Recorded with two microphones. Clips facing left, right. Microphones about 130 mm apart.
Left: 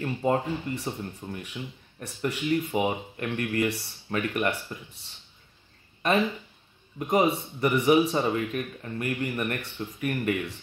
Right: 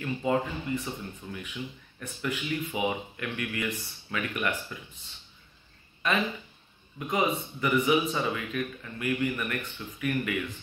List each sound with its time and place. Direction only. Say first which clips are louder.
0.0 s speech: left 2 dB; 35° left (ahead or behind)
7.0 s speech: left 4 dB; 40° left (ahead or behind)